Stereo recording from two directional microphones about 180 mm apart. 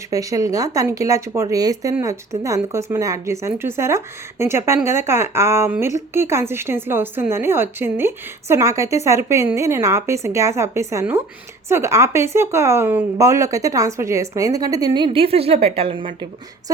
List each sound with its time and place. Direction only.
0.1 s a woman's voice: 20° right (ahead or behind)